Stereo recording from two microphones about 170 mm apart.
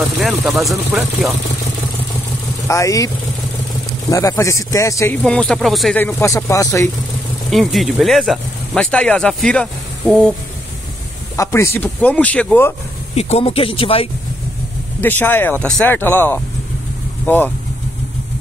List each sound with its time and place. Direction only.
0.2 s speech: centre (ahead or behind)
2.7 s speech: 20° left (ahead or behind)
4.1 s speech: 20° left (ahead or behind)
5.2 s speech: 5° left (ahead or behind)
5.9 s speech: 15° left (ahead or behind)
7.5 s speech: centre (ahead or behind)
11.3 s speech: 15° left (ahead or behind)
13.1 s speech: 35° left (ahead or behind)
15.0 s speech: 10° left (ahead or behind)